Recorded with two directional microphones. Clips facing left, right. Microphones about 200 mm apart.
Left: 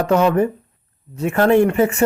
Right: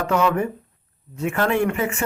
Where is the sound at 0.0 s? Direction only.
40° left (ahead or behind).